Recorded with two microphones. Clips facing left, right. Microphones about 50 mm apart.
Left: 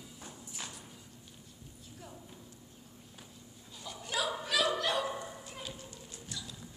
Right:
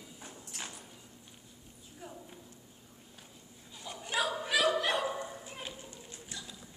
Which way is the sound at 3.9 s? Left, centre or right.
Centre.